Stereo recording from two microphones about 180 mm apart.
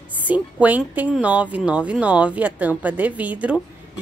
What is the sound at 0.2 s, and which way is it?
Speech, 10° right (ahead or behind).